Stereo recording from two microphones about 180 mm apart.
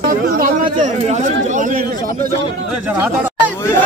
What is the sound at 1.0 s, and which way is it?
Speech, 40° right (ahead or behind).